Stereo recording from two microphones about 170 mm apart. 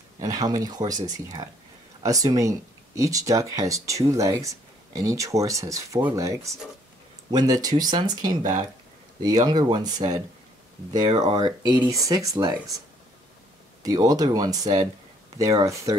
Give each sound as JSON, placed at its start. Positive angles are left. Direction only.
{"t": 0.2, "sound": "speech", "side_deg": -20}
{"t": 8.4, "sound": "speech", "side_deg": -45}
{"t": 9.2, "sound": "speech", "side_deg": -20}
{"t": 13.8, "sound": "speech", "side_deg": -20}